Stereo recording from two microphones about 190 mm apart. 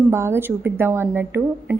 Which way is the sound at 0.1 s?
15° right (ahead or behind).